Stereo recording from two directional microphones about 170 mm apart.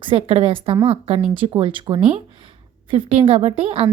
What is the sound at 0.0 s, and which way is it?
A woman's voice, 35° right (ahead or behind).